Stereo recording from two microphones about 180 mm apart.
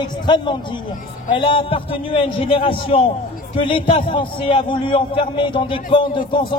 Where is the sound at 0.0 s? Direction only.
25° left (ahead or behind).